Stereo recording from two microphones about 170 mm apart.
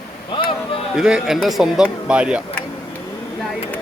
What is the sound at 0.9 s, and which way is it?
Speech, 5° right (ahead or behind).